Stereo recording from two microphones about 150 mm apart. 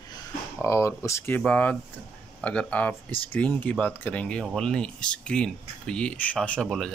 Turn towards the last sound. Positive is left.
turn(degrees=0)  # may be behind; listen again after turning